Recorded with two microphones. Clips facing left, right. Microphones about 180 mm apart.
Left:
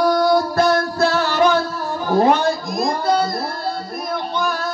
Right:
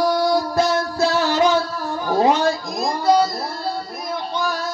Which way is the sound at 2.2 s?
60° left (ahead or behind).